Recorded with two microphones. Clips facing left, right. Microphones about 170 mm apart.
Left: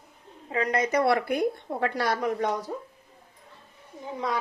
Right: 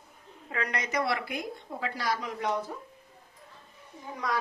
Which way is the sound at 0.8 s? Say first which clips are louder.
Left 8 dB; 50° left (ahead or behind).